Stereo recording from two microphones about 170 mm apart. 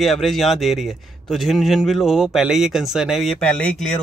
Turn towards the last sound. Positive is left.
turn(degrees=5)  # may be behind; listen again after turning